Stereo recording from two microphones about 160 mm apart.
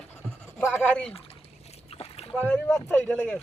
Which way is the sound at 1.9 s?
40° left (ahead or behind).